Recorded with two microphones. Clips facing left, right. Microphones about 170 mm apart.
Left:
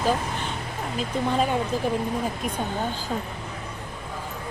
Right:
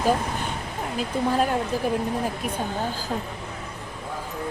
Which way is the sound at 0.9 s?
5° right (ahead or behind).